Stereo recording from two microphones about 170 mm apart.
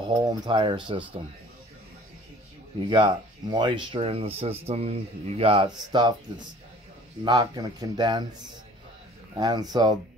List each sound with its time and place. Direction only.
0.0 s speech: 30° right (ahead or behind)
2.9 s speech: 30° right (ahead or behind)
7.2 s speech: 20° right (ahead or behind)
9.3 s speech: 20° right (ahead or behind)